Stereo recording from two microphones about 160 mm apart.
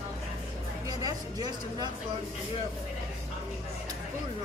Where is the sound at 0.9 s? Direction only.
25° right (ahead or behind).